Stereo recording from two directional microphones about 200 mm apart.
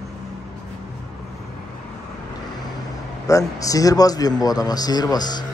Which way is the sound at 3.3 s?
15° left (ahead or behind).